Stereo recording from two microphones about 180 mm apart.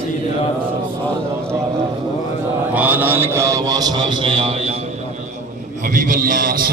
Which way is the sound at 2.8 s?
10° right (ahead or behind).